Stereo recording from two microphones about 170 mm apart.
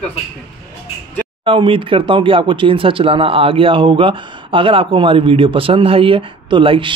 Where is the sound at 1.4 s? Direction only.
30° right (ahead or behind).